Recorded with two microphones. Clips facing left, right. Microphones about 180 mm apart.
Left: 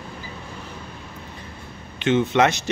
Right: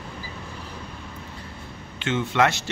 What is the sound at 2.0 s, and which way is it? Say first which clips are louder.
Speech: left 4 dB; 20° left (ahead or behind).